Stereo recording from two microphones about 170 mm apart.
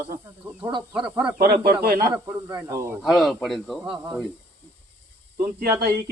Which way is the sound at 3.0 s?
Centre (ahead or behind).